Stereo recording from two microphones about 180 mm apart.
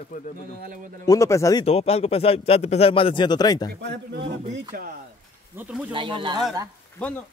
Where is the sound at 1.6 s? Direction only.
35° left (ahead or behind).